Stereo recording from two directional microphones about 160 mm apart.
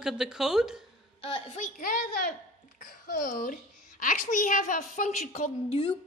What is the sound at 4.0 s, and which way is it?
A woman's voice, 55° left (ahead or behind).